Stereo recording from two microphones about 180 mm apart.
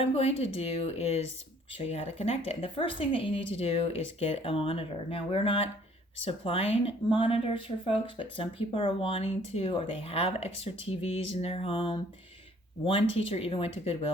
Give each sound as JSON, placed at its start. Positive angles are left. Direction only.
{"t": 0.0, "sound": "speech", "side_deg": 35}